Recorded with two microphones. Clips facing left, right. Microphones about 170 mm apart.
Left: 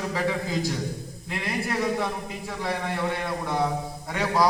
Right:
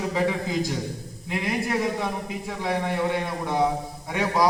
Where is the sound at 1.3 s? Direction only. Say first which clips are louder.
Right 3 dB; 15° right (ahead or behind).